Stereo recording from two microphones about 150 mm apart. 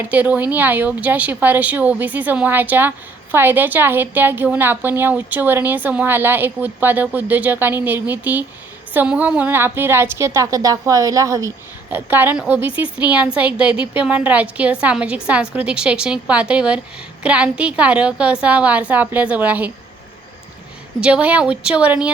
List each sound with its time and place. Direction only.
0.0 s a woman's voice: 10° right (ahead or behind)
21.0 s a woman's voice: 10° right (ahead or behind)